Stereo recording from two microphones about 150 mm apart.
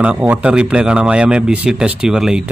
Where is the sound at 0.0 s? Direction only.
10° right (ahead or behind).